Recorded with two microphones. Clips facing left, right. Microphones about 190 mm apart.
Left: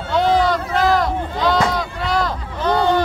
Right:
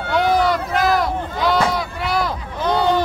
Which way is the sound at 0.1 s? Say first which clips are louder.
Left 1 dB; 10° right (ahead or behind).